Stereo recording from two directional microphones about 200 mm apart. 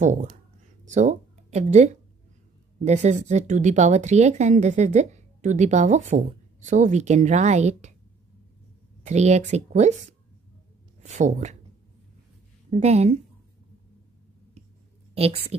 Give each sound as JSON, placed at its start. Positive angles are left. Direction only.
{"t": 0.0, "sound": "speech", "side_deg": -40}
{"t": 9.0, "sound": "speech", "side_deg": -35}
{"t": 11.0, "sound": "speech", "side_deg": -35}
{"t": 12.7, "sound": "speech", "side_deg": -35}